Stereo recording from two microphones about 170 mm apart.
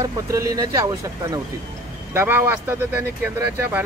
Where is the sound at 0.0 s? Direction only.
15° right (ahead or behind).